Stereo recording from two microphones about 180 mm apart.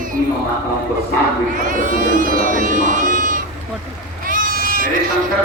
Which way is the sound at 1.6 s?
45° right (ahead or behind).